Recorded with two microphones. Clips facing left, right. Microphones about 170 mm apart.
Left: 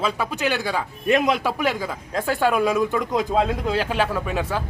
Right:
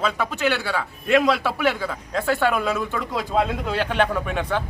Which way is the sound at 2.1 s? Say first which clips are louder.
Right 1 dB; 40° left (ahead or behind).